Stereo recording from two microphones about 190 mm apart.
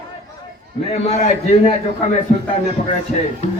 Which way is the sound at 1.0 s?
35° left (ahead or behind).